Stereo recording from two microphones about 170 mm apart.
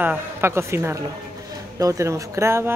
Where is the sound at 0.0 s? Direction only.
10° right (ahead or behind).